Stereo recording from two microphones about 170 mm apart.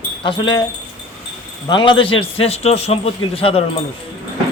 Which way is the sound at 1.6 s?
30° left (ahead or behind).